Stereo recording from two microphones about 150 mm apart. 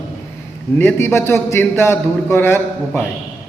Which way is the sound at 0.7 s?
15° left (ahead or behind).